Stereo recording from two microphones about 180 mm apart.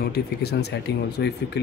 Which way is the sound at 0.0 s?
60° left (ahead or behind).